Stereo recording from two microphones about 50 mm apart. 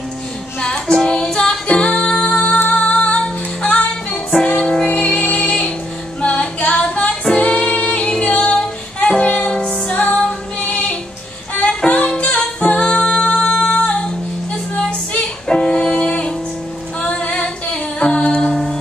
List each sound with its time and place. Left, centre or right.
0.6 s music: centre
6.2 s female singing: left
9.4 s music: centre
10.6 s female singing: left
11.6 s music: left
12.2 s singing: left
15.4 s music: centre
17.0 s female singing: left
18.5 s music: centre